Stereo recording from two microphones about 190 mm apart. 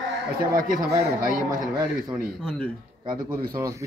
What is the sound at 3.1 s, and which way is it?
Speech, 20° right (ahead or behind).